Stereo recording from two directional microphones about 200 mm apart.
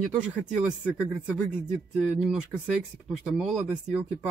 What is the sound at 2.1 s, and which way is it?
Speech, 5° right (ahead or behind).